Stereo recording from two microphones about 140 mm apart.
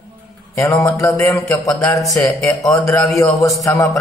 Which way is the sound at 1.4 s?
20° left (ahead or behind).